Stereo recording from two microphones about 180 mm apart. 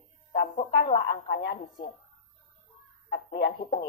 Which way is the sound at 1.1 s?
55° left (ahead or behind).